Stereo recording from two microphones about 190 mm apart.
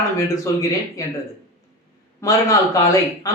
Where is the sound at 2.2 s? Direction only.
15° left (ahead or behind).